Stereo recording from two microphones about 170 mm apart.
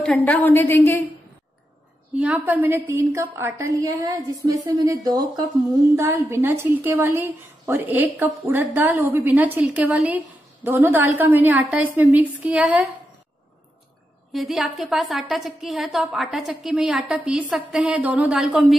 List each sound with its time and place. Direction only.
0.0 s a woman's voice: 5° left (ahead or behind)
2.1 s a woman's voice: 10° right (ahead or behind)
14.3 s a woman's voice: centre (ahead or behind)